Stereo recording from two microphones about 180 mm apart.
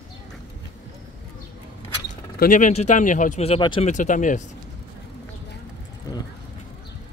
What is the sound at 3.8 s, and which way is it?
Speech, 45° left (ahead or behind).